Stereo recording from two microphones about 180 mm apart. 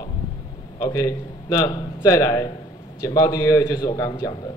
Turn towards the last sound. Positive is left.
turn(degrees=20)  # may be behind; listen again after turning